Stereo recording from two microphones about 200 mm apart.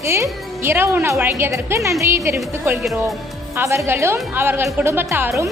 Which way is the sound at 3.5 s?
15° right (ahead or behind).